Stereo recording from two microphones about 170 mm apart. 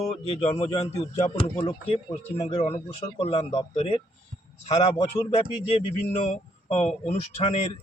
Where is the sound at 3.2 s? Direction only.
35° left (ahead or behind).